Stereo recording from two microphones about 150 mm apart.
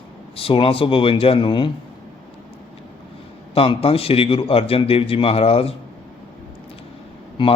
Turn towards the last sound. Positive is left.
turn(degrees=35)  # may be behind; listen again after turning